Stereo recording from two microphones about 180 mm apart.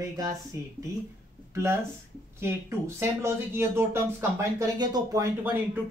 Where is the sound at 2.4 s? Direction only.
15° right (ahead or behind).